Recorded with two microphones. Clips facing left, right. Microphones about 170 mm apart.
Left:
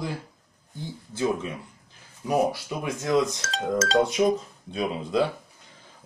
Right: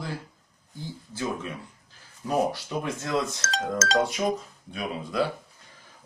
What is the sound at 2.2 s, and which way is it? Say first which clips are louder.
Speech: left 2 dB; 10° left (ahead or behind).